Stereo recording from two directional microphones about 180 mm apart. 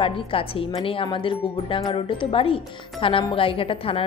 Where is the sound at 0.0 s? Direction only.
30° left (ahead or behind).